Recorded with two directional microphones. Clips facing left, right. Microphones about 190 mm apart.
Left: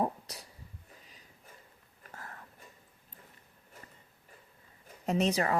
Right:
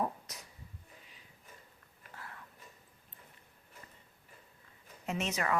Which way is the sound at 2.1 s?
45° left (ahead or behind).